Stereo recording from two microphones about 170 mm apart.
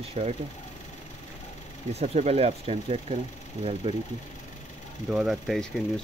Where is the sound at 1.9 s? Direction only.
40° right (ahead or behind).